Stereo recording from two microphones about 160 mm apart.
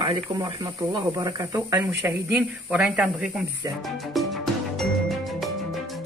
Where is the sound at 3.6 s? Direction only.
20° right (ahead or behind).